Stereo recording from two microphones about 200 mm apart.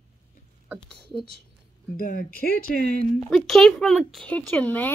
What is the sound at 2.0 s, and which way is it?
Speech, 45° left (ahead or behind).